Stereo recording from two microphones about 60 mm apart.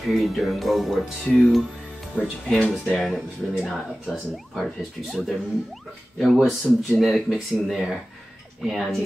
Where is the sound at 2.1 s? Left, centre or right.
Left.